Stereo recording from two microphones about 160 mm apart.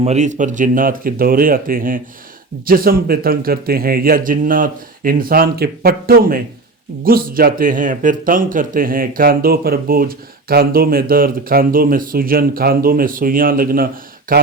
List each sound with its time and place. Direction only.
0.0 s speech: 45° right (ahead or behind); by 14.5 s 65° right (ahead or behind)